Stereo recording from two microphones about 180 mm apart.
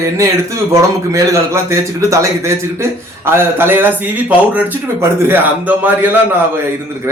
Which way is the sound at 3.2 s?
10° right (ahead or behind).